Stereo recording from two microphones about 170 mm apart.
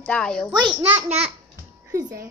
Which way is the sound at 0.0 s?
5° left (ahead or behind).